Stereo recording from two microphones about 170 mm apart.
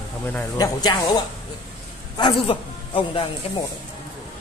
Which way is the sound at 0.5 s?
25° left (ahead or behind).